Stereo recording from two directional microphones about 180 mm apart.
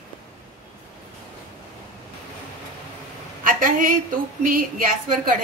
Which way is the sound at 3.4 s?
50° right (ahead or behind).